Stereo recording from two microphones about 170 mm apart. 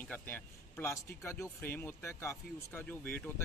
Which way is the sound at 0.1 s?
10° left (ahead or behind).